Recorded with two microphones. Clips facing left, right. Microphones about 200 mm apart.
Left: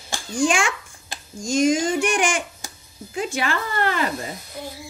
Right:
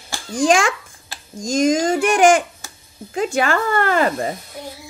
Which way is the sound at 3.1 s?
45° right (ahead or behind).